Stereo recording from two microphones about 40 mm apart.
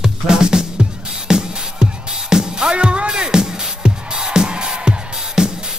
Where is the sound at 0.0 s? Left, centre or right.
Centre.